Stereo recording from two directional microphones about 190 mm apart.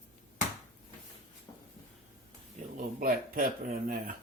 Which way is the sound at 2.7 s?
50° right (ahead or behind).